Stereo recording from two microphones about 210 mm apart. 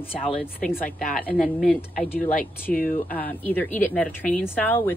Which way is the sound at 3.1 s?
10° left (ahead or behind).